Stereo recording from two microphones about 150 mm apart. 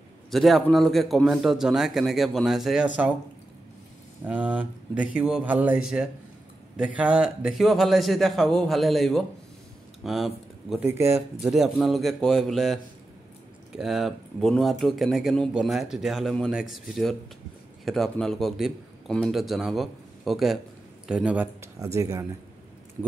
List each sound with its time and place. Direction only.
0.3 s speech: centre (ahead or behind)
4.2 s speech: 10° right (ahead or behind)
10.8 s speech: 15° right (ahead or behind)
11.1 s speech: centre (ahead or behind)
21.7 s speech: 20° right (ahead or behind)